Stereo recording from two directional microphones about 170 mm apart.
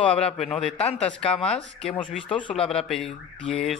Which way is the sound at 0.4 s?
5° left (ahead or behind).